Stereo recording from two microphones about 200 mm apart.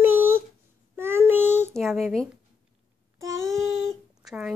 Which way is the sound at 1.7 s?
Centre (ahead or behind).